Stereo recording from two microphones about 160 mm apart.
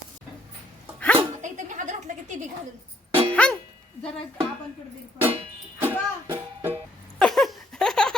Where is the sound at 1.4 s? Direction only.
50° right (ahead or behind).